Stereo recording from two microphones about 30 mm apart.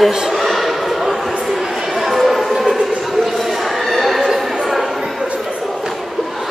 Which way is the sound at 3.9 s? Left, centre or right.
Centre.